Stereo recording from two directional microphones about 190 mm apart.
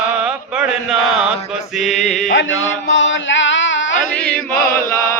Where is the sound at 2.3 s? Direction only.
90° left.